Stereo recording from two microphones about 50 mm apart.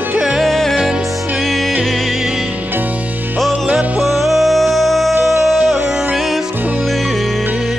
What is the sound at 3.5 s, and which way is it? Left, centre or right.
Music, right.